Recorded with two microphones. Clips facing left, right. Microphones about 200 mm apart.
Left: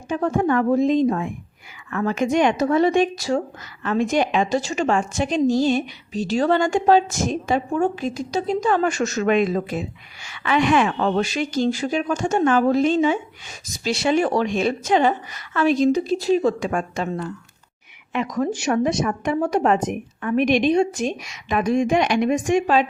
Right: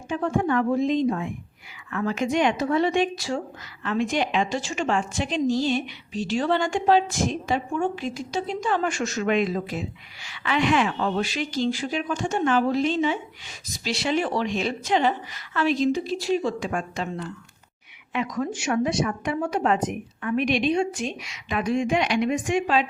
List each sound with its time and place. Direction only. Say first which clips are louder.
0.1 s a woman's voice: left 3 dB; 40° left (ahead or behind)
18.3 s a woman's voice: left 6 dB; 40° left (ahead or behind)